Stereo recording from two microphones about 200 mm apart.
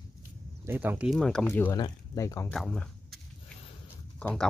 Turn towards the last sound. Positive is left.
turn(degrees=5)  # may be behind; listen again after turning